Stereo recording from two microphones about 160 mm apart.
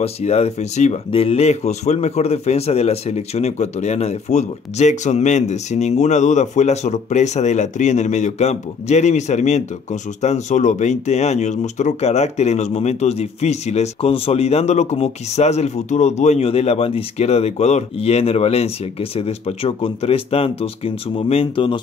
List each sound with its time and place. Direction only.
0.0 s speech: 40° left (ahead or behind)